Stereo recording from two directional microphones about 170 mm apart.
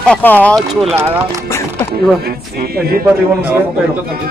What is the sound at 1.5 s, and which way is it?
Music, 15° left (ahead or behind).